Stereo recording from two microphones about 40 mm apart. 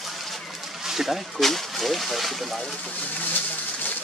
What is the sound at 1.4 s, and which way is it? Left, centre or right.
Speech, centre.